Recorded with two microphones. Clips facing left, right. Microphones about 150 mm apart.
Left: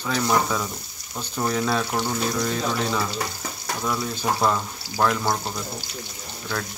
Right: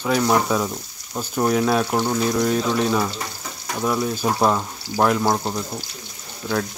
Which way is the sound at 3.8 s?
25° right (ahead or behind).